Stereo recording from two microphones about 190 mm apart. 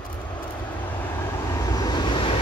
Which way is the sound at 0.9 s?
10° left (ahead or behind).